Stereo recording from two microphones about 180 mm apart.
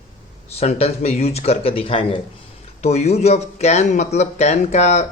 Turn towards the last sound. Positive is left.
turn(degrees=40)  # may be behind; listen again after turning